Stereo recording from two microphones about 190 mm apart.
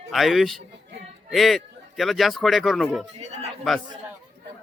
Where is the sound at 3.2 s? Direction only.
35° right (ahead or behind).